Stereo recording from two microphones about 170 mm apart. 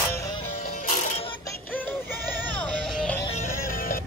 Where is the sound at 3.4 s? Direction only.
55° left (ahead or behind).